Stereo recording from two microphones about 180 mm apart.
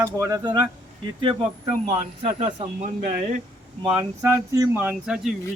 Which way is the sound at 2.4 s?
40° right (ahead or behind).